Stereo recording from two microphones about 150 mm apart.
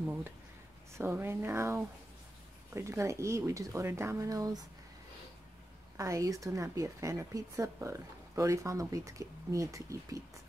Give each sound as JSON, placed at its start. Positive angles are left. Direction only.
{"t": 0.0, "sound": "a sound", "side_deg": -10}
{"t": 0.9, "sound": "a woman's voice", "side_deg": -15}
{"t": 5.9, "sound": "a woman's voice", "side_deg": -20}